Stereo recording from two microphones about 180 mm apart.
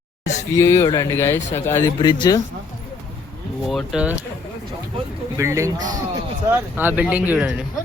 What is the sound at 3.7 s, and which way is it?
Speech, centre (ahead or behind).